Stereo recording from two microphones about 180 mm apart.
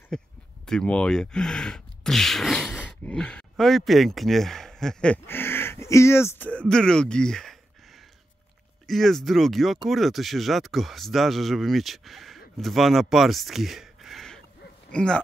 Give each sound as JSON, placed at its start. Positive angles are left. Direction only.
{"t": 0.1, "sound": "speech", "side_deg": 5}
{"t": 8.8, "sound": "speech", "side_deg": 0}